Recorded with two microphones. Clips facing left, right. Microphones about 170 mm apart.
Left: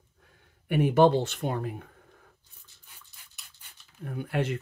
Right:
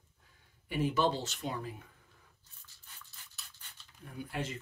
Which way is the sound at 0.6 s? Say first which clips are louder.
Left 10 dB; 60° left (ahead or behind).